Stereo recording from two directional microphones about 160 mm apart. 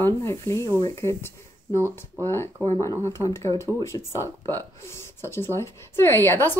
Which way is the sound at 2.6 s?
15° left (ahead or behind).